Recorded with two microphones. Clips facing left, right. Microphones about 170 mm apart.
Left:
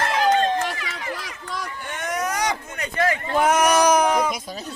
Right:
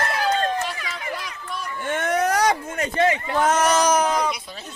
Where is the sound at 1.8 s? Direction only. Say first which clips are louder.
Right 7 dB; 55° right (ahead or behind).